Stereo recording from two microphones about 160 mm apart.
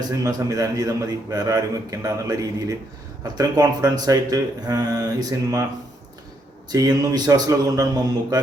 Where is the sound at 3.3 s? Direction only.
25° right (ahead or behind).